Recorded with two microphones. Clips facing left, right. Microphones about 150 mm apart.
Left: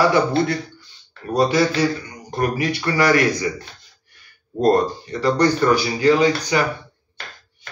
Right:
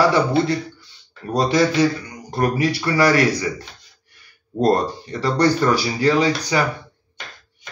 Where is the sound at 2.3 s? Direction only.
35° right (ahead or behind).